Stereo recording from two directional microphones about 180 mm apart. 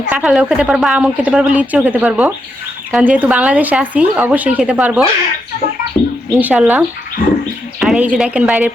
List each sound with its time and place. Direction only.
0.1 s speech: 5° right (ahead or behind)
6.0 s bird: 15° left (ahead or behind)
6.3 s speech: 5° right (ahead or behind)